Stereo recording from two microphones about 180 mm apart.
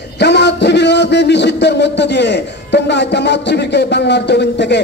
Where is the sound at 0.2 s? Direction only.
70° left (ahead or behind).